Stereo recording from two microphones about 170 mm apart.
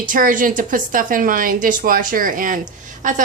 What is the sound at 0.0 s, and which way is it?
A woman's voice, 55° right (ahead or behind).